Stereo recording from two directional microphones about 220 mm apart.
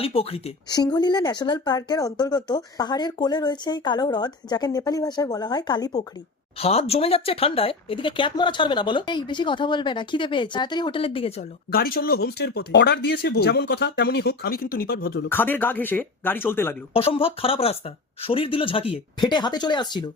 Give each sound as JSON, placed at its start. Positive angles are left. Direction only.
{"t": 0.0, "sound": "speech", "side_deg": 25}
{"t": 11.7, "sound": "speech", "side_deg": 45}
{"t": 15.3, "sound": "speech", "side_deg": 10}
{"t": 16.9, "sound": "speech", "side_deg": 25}